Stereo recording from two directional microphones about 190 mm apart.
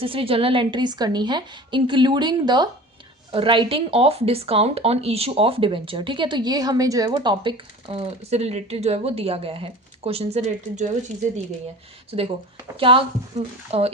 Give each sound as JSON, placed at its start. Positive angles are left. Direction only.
{"t": 0.0, "sound": "speech", "side_deg": -30}
{"t": 12.1, "sound": "speech", "side_deg": -30}